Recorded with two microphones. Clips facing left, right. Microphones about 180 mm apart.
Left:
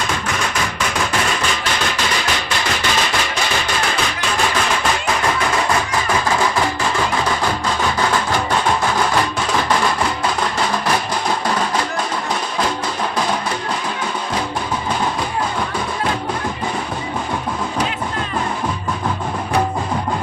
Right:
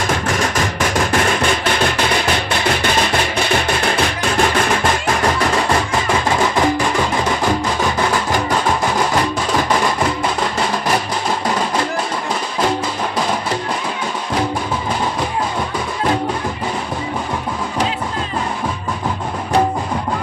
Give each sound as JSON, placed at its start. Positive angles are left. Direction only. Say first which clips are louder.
{"t": 0.5, "sound": "music", "louder": "right 4 dB", "side_deg": -45}